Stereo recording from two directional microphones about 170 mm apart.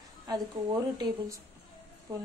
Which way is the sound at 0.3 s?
25° right (ahead or behind).